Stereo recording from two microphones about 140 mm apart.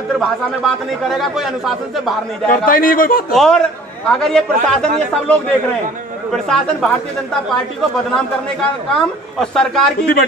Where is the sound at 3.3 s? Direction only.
5° left (ahead or behind).